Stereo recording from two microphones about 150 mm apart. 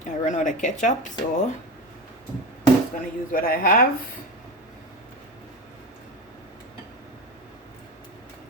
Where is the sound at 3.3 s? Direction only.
70° left (ahead or behind).